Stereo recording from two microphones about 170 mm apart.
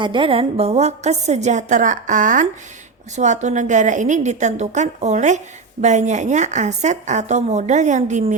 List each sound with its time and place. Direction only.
0.0 s a woman's voice: 30° right (ahead or behind); by 8.4 s 45° right (ahead or behind)